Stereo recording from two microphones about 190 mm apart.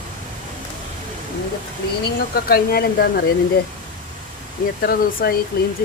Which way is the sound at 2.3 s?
55° left (ahead or behind).